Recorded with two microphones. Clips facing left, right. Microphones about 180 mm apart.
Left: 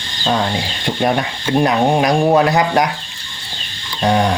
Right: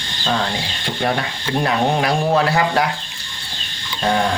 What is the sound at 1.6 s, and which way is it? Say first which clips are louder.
Speech: left 4 dB; 20° left (ahead or behind).